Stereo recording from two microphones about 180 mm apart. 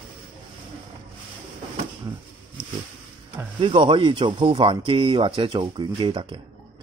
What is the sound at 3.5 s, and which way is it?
Speech, 25° right (ahead or behind).